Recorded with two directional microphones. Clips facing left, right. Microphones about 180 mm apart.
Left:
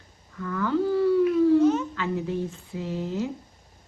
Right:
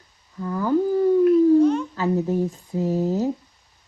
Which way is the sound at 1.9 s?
40° right (ahead or behind).